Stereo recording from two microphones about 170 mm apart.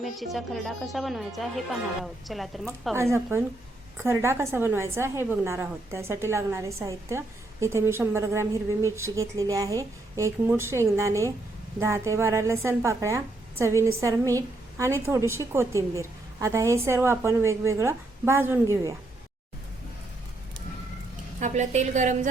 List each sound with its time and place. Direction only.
0.0 s a woman's voice: centre (ahead or behind)
2.9 s a woman's voice: 15° right (ahead or behind)
21.4 s a woman's voice: 45° right (ahead or behind)